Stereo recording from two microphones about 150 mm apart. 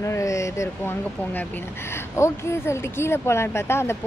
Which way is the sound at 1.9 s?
20° left (ahead or behind).